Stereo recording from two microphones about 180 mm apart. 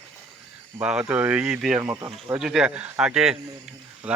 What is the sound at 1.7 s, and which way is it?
Speech, 15° right (ahead or behind).